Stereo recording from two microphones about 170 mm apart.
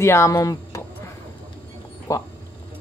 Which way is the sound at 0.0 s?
15° left (ahead or behind).